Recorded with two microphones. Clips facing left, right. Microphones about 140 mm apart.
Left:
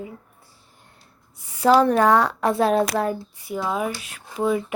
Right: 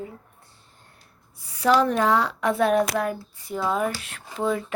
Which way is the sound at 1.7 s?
55° left (ahead or behind).